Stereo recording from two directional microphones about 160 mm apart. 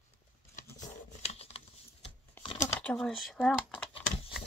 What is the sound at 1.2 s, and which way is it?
Computer keyboard, 40° left (ahead or behind).